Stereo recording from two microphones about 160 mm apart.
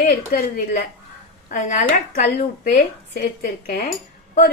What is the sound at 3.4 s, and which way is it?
Speech, 70° left (ahead or behind).